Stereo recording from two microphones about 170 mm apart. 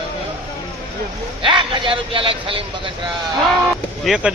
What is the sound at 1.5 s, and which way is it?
A man's voice, 30° right (ahead or behind).